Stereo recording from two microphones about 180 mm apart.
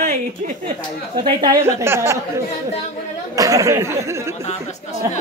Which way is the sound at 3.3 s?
20° right (ahead or behind).